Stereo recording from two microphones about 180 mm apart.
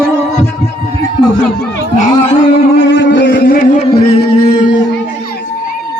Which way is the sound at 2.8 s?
90° left.